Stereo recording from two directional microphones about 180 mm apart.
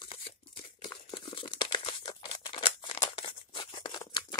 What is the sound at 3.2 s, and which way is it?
Tearing, 25° left (ahead or behind).